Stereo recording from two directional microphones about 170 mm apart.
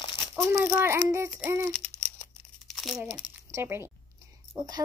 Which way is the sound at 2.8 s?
Centre (ahead or behind).